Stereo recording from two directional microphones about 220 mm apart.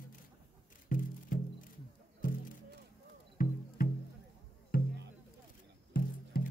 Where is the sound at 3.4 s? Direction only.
40° left (ahead or behind).